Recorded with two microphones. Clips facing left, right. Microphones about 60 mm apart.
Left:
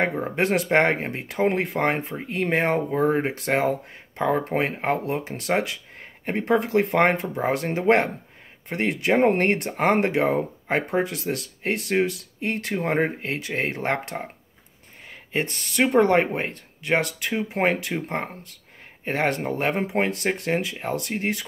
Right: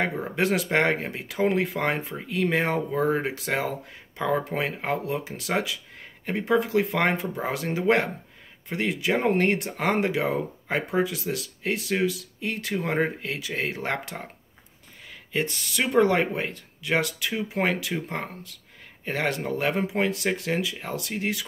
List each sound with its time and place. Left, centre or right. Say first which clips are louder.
0.0 s speech: left 2 dB; left